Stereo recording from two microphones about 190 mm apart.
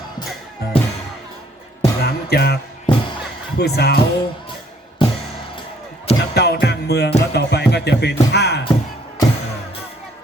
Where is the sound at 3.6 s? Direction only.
60° left (ahead or behind).